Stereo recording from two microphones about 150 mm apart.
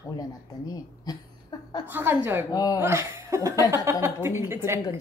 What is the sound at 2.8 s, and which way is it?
A woman's voice, 20° right (ahead or behind).